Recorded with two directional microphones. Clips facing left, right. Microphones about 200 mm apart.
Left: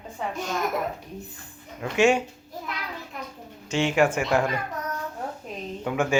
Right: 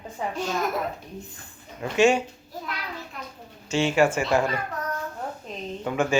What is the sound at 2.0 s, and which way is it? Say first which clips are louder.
Speech: right 1 dB; 15° left (ahead or behind).